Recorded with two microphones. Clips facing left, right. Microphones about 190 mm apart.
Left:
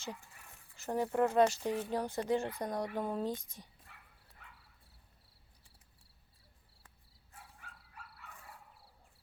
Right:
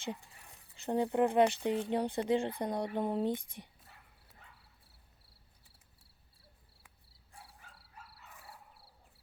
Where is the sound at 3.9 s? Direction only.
35° right (ahead or behind).